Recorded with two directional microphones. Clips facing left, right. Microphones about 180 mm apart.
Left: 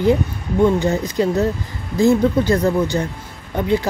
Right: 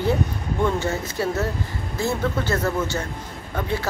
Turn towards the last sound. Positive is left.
turn(degrees=20)  # may be behind; listen again after turning